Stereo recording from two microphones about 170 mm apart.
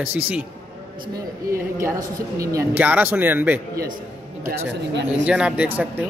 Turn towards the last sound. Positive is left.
turn(degrees=-10)  # may be behind; listen again after turning